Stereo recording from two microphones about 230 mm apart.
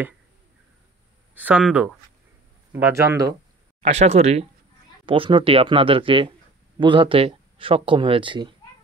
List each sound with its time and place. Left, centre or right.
1.3 s speech: centre
3.8 s speech: right